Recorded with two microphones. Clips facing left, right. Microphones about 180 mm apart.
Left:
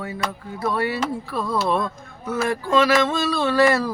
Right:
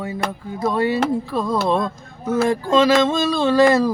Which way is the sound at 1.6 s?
20° right (ahead or behind).